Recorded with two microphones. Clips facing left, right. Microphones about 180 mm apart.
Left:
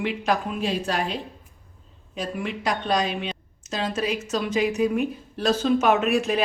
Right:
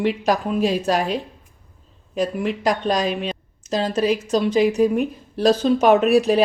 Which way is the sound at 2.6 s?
40° right (ahead or behind).